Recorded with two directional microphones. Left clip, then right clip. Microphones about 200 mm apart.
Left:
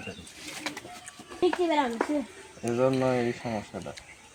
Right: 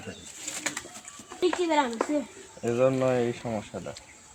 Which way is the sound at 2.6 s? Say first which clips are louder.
Right 2 dB; 5° right (ahead or behind).